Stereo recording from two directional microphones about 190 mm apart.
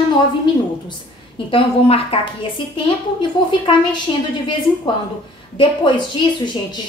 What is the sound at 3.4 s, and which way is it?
Speech, 25° left (ahead or behind).